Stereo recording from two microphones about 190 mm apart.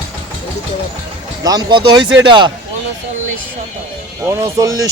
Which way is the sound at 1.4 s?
20° right (ahead or behind).